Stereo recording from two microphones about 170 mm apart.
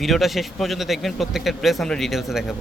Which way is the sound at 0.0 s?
Centre (ahead or behind).